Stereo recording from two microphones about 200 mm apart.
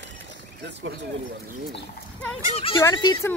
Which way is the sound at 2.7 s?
15° left (ahead or behind).